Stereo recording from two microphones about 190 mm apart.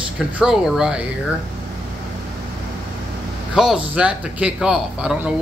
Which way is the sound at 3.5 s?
5° right (ahead or behind).